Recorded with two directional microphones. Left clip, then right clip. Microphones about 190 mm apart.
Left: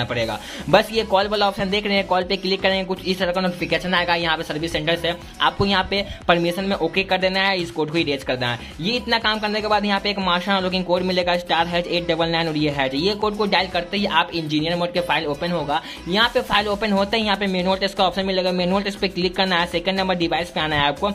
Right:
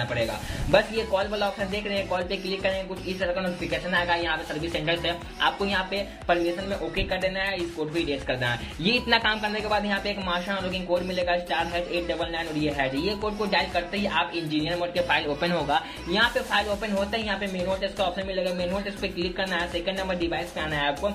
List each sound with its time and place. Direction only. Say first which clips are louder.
0.7 s a man's voice: left 5 dB; 35° left (ahead or behind)
5.6 s a man's voice: left 7 dB; 35° left (ahead or behind)
8.8 s a man's voice: left 2 dB; 10° left (ahead or behind); by 15.0 s 35° left (ahead or behind)
15.0 s speech: left 3 dB; 20° left (ahead or behind)
16.1 s a man's voice: left 5 dB; 30° left (ahead or behind)